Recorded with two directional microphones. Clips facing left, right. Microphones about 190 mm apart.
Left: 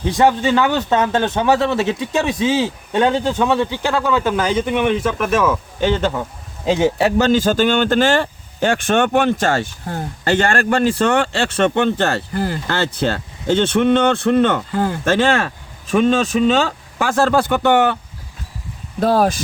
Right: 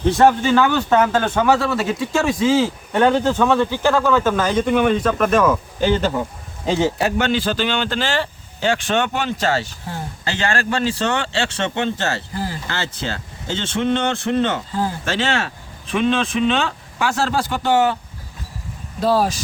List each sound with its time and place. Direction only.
0.0 s speech: 15° left (ahead or behind); by 6.1 s 5° right (ahead or behind)
7.2 s speech: 40° left (ahead or behind); by 17.9 s 60° left (ahead or behind)
18.9 s speech: 55° left (ahead or behind)